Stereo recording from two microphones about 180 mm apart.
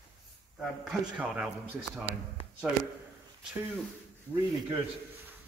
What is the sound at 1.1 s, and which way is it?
Speech, 5° right (ahead or behind).